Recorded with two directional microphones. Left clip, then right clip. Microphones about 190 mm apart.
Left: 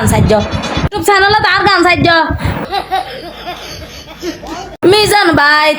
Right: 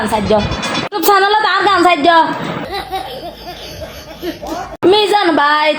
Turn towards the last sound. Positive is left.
turn(degrees=20)  # may be behind; listen again after turning